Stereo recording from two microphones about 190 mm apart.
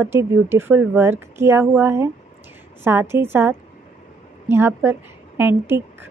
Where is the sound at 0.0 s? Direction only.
15° right (ahead or behind).